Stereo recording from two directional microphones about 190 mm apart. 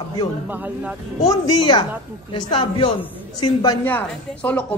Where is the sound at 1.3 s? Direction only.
20° left (ahead or behind).